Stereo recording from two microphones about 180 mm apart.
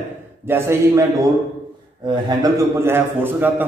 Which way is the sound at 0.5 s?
15° right (ahead or behind).